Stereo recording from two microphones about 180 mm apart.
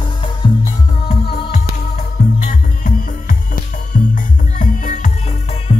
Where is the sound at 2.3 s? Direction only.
45° left (ahead or behind).